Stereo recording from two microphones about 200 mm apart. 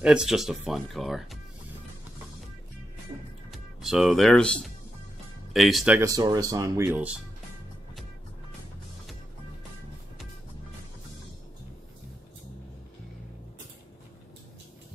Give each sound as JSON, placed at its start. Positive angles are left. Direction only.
{"t": 0.0, "sound": "speech", "side_deg": -5}
{"t": 3.5, "sound": "speech", "side_deg": 0}
{"t": 5.9, "sound": "speech", "side_deg": -15}